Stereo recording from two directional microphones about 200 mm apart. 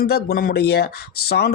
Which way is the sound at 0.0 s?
50° left (ahead or behind).